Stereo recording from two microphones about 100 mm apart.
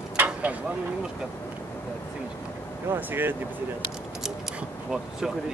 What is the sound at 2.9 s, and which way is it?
Speech, 20° right (ahead or behind).